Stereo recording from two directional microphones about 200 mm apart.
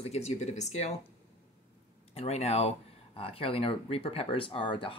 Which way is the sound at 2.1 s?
30° left (ahead or behind).